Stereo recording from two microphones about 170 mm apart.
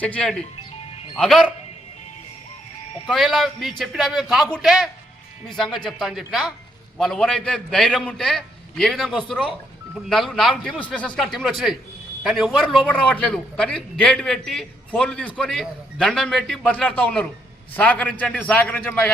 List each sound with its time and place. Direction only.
0.0 s a man's voice: 5° left (ahead or behind)
3.1 s a man's voice: centre (ahead or behind)